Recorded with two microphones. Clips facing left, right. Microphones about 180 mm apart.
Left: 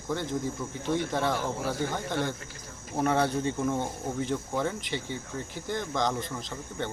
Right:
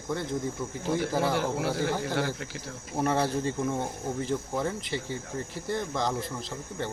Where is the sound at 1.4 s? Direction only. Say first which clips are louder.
Right 3 dB; 70° right (ahead or behind).